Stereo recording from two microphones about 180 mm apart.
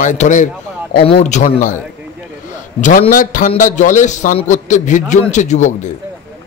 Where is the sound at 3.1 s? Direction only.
45° left (ahead or behind).